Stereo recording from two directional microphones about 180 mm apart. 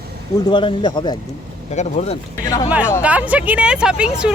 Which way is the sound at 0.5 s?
25° left (ahead or behind).